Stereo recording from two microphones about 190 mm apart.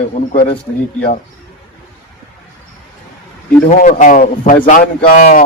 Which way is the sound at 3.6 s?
35° left (ahead or behind).